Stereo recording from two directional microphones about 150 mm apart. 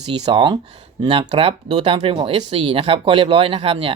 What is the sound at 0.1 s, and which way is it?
Speech, 35° right (ahead or behind).